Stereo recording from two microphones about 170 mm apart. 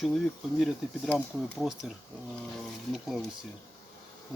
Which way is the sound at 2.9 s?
Centre (ahead or behind).